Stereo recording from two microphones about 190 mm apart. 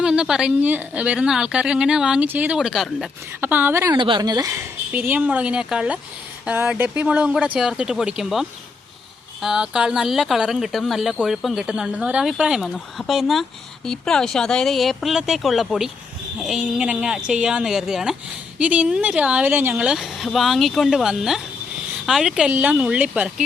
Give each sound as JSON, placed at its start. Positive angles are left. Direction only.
{"t": 0.0, "sound": "a woman's voice", "side_deg": -5}